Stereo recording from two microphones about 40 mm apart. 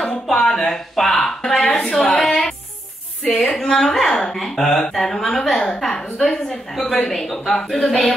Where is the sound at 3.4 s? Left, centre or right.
Centre.